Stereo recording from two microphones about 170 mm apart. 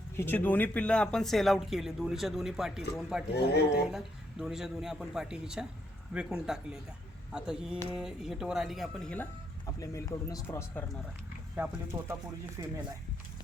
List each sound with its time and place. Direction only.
0.2 s speech: 10° left (ahead or behind)
3.3 s speech: 70° left (ahead or behind)
3.8 s speech: centre (ahead or behind); by 10.9 s 15° left (ahead or behind)
11.5 s speech: 10° right (ahead or behind)
12.6 s speech: 20° right (ahead or behind)